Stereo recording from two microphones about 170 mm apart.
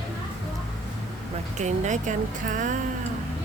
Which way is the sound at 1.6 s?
45° right (ahead or behind).